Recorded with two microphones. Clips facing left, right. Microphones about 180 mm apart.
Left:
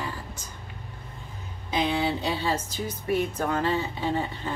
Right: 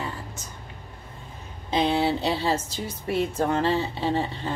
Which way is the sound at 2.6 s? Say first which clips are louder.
Left 1 dB; 85° right.